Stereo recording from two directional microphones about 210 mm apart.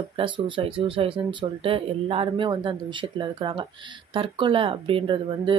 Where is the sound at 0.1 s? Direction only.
25° right (ahead or behind).